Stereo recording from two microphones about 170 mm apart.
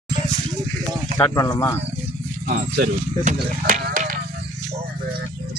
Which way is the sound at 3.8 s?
50° right (ahead or behind).